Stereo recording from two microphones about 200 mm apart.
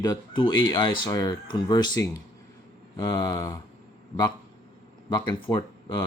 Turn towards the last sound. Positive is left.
turn(degrees=20)  # may be behind; listen again after turning